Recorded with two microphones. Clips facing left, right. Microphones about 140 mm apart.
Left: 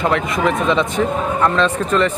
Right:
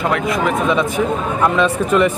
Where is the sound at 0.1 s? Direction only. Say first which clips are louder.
Even; 5° right (ahead or behind).